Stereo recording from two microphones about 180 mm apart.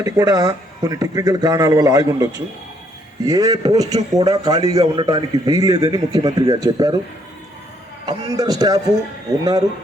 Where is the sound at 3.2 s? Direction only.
20° right (ahead or behind).